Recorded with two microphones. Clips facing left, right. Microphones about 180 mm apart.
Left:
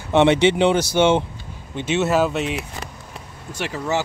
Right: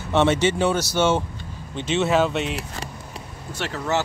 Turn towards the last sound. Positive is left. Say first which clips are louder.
# left 1 dB
turn(degrees=10)  # may be behind; listen again after turning